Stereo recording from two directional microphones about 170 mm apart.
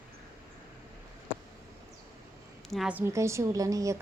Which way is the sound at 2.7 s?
5° right (ahead or behind).